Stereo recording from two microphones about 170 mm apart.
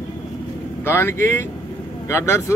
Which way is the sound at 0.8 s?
15° left (ahead or behind).